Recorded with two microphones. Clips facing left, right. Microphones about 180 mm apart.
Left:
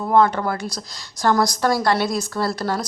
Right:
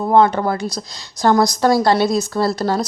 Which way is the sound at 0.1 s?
30° right (ahead or behind).